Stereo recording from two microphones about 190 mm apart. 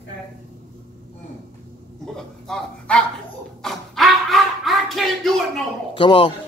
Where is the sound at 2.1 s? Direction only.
Centre (ahead or behind).